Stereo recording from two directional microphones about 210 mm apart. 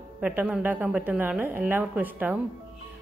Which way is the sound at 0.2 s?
5° right (ahead or behind).